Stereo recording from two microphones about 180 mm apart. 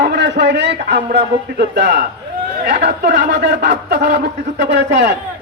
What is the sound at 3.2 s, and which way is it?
A man's voice, 75° right (ahead or behind).